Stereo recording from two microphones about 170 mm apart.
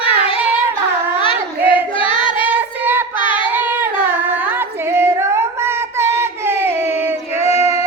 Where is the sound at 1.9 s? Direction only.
30° left (ahead or behind).